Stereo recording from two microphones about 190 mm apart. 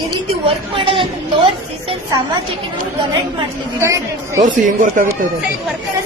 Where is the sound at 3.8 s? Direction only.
15° right (ahead or behind).